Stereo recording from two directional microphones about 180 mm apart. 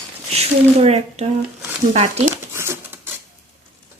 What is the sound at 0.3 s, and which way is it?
Speech, 35° right (ahead or behind).